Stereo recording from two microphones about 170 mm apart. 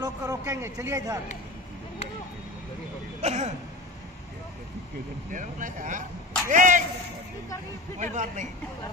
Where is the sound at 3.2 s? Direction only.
40° right (ahead or behind).